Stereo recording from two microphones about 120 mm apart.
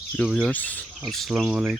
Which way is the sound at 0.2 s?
10° left (ahead or behind).